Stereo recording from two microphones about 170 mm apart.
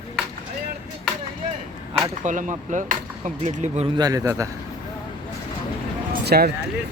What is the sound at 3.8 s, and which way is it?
Speech, 25° right (ahead or behind).